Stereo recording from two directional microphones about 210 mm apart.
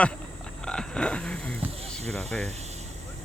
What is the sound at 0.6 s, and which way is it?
Frog, 5° left (ahead or behind).